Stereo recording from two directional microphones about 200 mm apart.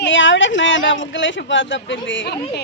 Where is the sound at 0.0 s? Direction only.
70° left (ahead or behind).